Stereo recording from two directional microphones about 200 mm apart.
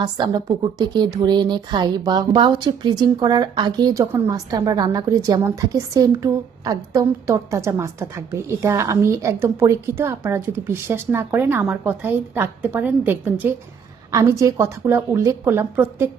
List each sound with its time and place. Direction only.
0.0 s a woman's voice: 20° right (ahead or behind)